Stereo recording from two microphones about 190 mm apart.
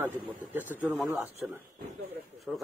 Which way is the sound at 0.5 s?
10° right (ahead or behind).